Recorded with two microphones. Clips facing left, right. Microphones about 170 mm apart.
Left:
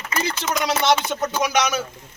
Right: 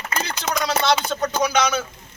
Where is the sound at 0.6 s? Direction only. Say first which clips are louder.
Left 1 dB; 20° left (ahead or behind).